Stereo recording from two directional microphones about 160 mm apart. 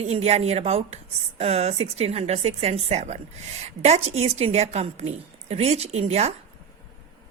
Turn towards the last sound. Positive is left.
turn(degrees=-40)  # may be behind; listen again after turning